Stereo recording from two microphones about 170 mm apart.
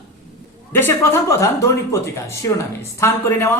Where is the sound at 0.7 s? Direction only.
10° left (ahead or behind).